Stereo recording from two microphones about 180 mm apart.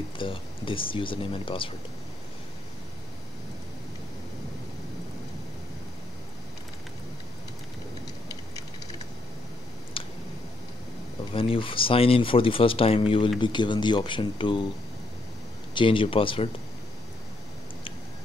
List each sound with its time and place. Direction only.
0.2 s speech: 30° left (ahead or behind)
9.9 s a sound: 30° left (ahead or behind)
11.3 s speech: 30° left (ahead or behind)
15.7 s speech: 30° left (ahead or behind)